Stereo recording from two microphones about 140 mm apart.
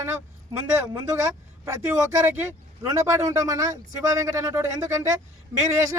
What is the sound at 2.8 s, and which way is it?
A man's voice, 20° right (ahead or behind).